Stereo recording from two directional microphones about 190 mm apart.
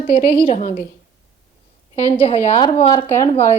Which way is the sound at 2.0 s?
30° left (ahead or behind).